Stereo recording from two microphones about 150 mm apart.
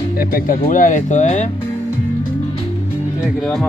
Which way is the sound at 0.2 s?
80° left.